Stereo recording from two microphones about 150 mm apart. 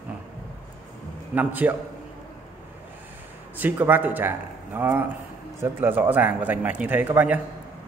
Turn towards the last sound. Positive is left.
turn(degrees=-10)  # may be behind; listen again after turning